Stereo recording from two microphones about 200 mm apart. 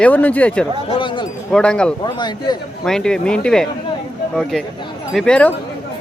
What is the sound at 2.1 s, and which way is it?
Speech, 20° left (ahead or behind).